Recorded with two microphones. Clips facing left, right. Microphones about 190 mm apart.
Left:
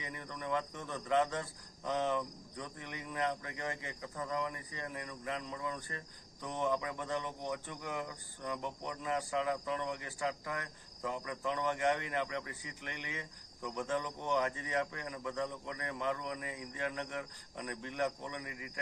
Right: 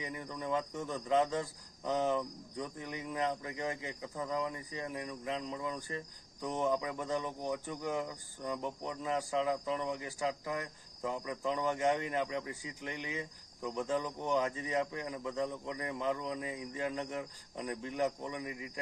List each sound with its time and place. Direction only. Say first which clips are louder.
0.0 s cricket: right 3 dB; 15° right (ahead or behind)
9.5 s cricket: right 2 dB; 15° right (ahead or behind)
16.2 s speech: right 3 dB; 25° right (ahead or behind)
17.6 s cricket: right 3 dB; 15° right (ahead or behind)